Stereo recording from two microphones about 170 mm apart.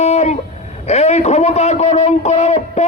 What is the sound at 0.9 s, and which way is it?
A man's voice, 40° left (ahead or behind).